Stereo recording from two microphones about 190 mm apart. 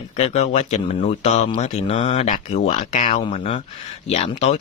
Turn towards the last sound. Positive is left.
turn(degrees=35)  # may be behind; listen again after turning